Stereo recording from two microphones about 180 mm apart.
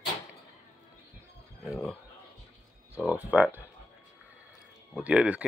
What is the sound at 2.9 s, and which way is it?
Speech, 10° right (ahead or behind).